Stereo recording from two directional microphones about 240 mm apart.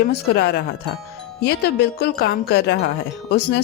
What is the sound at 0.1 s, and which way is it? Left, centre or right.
Speech, left.